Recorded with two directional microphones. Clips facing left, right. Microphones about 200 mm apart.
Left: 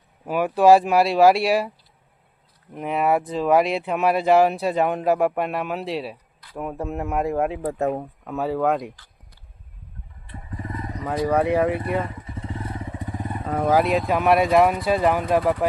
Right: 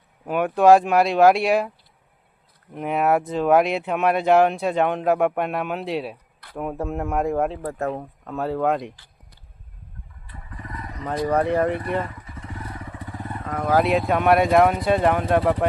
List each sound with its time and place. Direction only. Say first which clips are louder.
0.3 s speech: even; 5° left (ahead or behind)
2.7 s speech: right 1 dB; centre (ahead or behind); by 8.0 s 15° left (ahead or behind)
8.2 s speech: even; 5° left (ahead or behind)
10.2 s vehicle: left 5 dB; 25° left (ahead or behind)
11.0 s speech: left 1 dB; 5° left (ahead or behind)
12.0 s motorcycle: left 4 dB; 25° left (ahead or behind)
13.7 s speech: right 3 dB; centre (ahead or behind)